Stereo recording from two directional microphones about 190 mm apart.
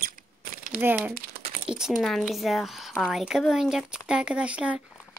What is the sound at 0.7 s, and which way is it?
Speech, 10° right (ahead or behind).